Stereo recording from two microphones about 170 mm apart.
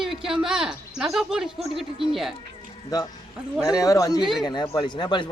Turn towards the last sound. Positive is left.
turn(degrees=25)  # may be behind; listen again after turning